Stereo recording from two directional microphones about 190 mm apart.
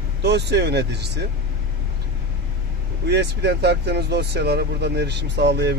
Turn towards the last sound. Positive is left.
turn(degrees=-65)  # may be behind; listen again after turning